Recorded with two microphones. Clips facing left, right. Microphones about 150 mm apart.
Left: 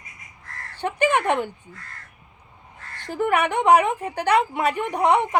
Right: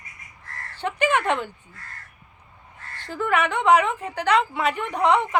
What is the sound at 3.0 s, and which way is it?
A woman's voice, 15° left (ahead or behind).